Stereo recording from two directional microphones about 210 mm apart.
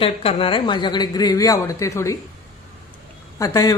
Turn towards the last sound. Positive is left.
turn(degrees=15)  # may be behind; listen again after turning